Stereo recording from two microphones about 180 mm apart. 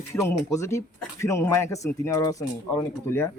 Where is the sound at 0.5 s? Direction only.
15° left (ahead or behind).